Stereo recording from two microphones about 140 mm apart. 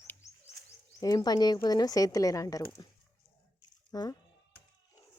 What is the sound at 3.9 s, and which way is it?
Speech, 25° left (ahead or behind).